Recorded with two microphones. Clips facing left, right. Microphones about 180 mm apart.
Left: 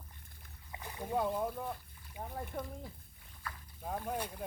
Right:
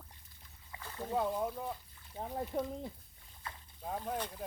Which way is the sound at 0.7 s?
15° left (ahead or behind).